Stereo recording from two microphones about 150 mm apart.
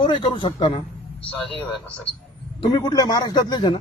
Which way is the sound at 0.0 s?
30° left (ahead or behind).